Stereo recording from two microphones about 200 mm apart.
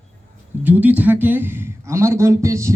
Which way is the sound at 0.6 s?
10° right (ahead or behind).